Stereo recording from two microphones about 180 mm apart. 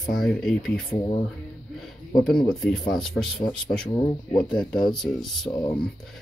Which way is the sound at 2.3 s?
5° left (ahead or behind).